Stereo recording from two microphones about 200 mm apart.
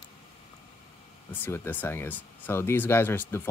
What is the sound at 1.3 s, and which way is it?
Speech, 10° left (ahead or behind).